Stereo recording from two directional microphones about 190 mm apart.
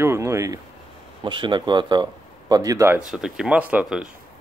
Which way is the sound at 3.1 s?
5° right (ahead or behind).